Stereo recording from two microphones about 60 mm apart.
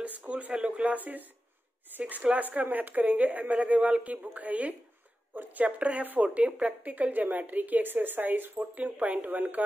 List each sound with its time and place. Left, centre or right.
0.2 s speech: right